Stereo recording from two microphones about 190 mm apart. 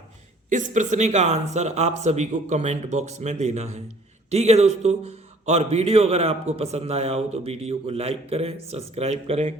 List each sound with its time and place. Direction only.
0.5 s a man's voice: 40° right (ahead or behind)